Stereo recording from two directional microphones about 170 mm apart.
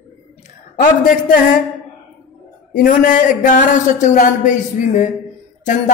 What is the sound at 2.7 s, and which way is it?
A woman's voice, 55° left (ahead or behind).